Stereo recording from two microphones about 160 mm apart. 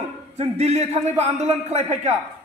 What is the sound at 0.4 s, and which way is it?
A man's voice, 45° right (ahead or behind).